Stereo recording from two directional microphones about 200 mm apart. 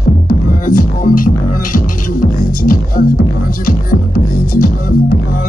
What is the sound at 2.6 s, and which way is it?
Music, 45° left (ahead or behind).